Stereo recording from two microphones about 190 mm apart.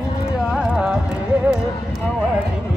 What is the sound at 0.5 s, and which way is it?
Music, 5° right (ahead or behind).